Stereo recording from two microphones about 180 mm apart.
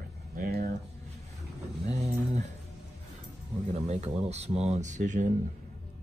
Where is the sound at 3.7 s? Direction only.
35° right (ahead or behind).